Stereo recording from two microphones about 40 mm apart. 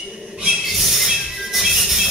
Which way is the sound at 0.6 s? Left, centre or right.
Centre.